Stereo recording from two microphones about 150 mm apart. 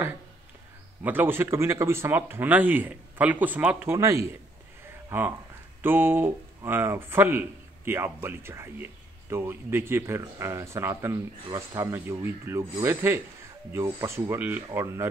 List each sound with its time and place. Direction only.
1.0 s speech: 15° right (ahead or behind)